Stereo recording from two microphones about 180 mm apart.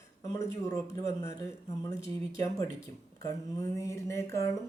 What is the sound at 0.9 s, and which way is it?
Speech, 20° left (ahead or behind).